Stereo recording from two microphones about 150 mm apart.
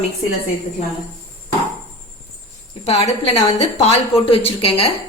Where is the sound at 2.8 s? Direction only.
45° left (ahead or behind).